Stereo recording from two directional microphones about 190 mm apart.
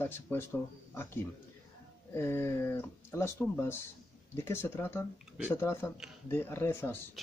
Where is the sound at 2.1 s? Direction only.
15° left (ahead or behind).